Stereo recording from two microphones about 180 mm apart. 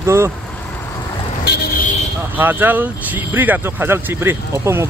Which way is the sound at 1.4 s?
60° left (ahead or behind).